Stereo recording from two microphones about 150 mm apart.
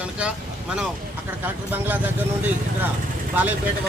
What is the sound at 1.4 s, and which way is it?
Speech, 10° right (ahead or behind).